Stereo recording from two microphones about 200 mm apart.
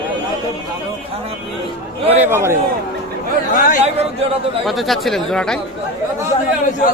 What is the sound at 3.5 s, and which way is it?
Speech, 45° left (ahead or behind).